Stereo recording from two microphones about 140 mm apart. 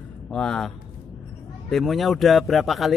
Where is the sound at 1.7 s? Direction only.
Centre (ahead or behind).